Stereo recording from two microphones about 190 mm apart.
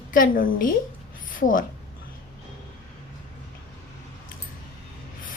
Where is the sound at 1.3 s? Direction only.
45° left (ahead or behind).